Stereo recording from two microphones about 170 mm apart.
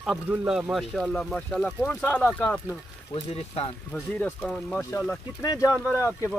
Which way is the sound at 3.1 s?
35° left (ahead or behind).